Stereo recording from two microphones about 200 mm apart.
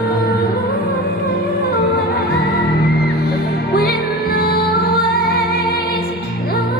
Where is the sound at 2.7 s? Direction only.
50° left (ahead or behind).